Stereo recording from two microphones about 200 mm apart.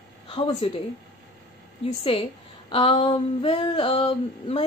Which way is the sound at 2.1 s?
30° left (ahead or behind).